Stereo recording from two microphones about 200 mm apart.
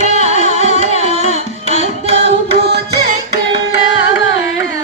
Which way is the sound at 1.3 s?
30° right (ahead or behind).